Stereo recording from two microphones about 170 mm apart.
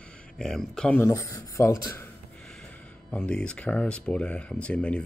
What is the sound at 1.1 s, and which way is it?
Speech, 20° left (ahead or behind).